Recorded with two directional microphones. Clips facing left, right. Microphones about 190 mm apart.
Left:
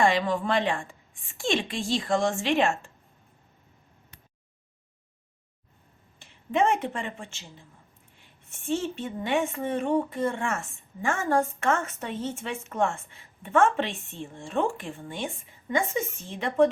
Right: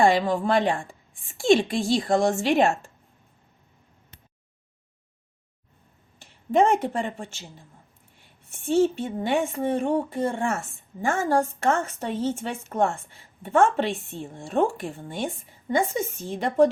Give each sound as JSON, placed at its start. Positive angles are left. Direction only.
{"t": 0.0, "sound": "speech", "side_deg": -35}
{"t": 6.7, "sound": "speech", "side_deg": -35}
{"t": 8.6, "sound": "speech", "side_deg": -35}